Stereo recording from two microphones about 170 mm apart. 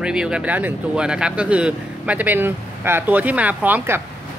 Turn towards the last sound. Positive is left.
turn(degrees=-10)  # may be behind; listen again after turning